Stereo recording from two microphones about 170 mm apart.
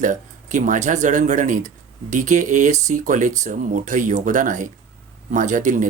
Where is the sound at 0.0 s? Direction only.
50° right (ahead or behind).